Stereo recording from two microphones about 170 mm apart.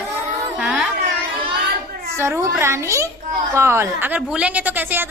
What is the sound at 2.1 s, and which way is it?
A woman's voice, 15° right (ahead or behind).